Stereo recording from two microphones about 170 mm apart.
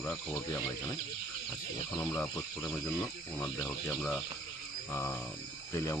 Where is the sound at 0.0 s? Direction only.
10° left (ahead or behind).